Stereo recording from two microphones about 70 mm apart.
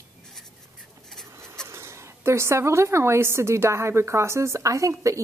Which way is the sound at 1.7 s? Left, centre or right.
Right.